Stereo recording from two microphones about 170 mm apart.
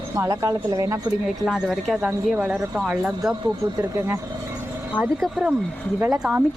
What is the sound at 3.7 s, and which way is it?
Speech, 20° right (ahead or behind).